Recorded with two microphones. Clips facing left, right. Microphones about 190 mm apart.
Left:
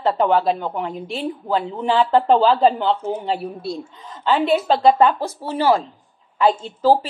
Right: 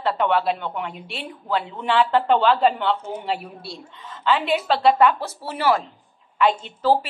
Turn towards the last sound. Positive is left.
turn(degrees=35)  # may be behind; listen again after turning